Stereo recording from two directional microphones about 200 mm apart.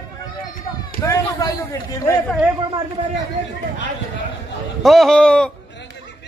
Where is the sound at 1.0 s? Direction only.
15° left (ahead or behind).